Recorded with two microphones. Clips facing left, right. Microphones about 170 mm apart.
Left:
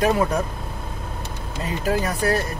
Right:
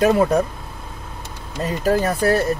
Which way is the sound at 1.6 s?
40° right (ahead or behind).